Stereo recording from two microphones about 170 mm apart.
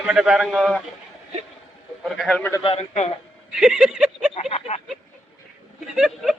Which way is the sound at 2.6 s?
35° left (ahead or behind).